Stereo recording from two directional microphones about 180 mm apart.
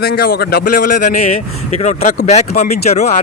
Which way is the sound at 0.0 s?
60° left (ahead or behind).